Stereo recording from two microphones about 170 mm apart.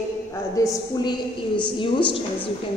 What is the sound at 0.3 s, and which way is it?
A woman's voice, 25° left (ahead or behind).